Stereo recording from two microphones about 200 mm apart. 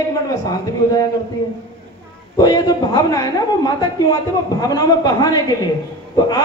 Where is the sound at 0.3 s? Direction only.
15° left (ahead or behind).